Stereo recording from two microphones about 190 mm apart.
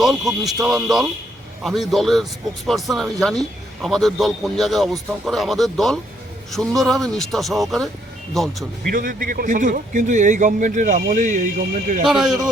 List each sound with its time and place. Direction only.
0.0 s a man's voice: centre (ahead or behind)
8.9 s a man's voice: 50° right (ahead or behind)